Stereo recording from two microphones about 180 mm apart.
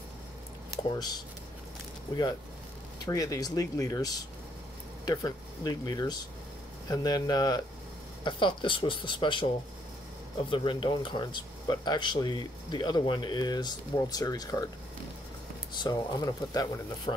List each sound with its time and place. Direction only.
0.8 s speech: 20° left (ahead or behind)
3.1 s speech: 20° left (ahead or behind)
10.5 s speech: 30° left (ahead or behind)
15.8 s speech: 20° left (ahead or behind)